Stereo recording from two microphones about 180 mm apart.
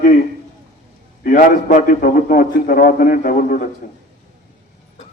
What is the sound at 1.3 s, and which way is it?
A man's voice, 50° left (ahead or behind).